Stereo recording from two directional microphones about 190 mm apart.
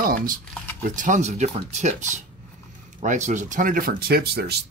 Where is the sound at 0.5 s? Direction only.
10° left (ahead or behind).